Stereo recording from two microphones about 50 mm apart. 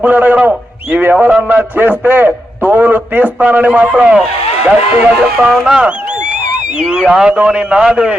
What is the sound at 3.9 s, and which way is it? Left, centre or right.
Speech, right.